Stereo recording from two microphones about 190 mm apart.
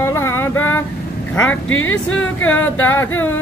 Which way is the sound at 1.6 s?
90° left.